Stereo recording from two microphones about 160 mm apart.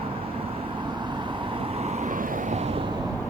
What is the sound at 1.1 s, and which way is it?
Vehicle, 30° right (ahead or behind).